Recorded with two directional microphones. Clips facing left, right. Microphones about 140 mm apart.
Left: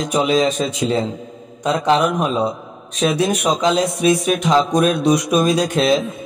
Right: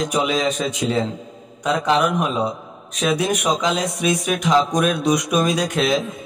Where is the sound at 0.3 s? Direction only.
35° left (ahead or behind).